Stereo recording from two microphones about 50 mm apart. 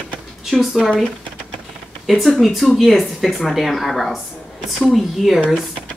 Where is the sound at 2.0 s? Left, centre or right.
Centre.